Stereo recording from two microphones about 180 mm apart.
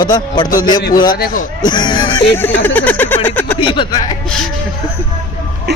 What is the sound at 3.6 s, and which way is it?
Speech, 30° left (ahead or behind).